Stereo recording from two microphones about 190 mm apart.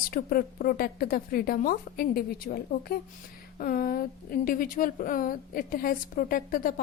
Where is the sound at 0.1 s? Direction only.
50° left (ahead or behind).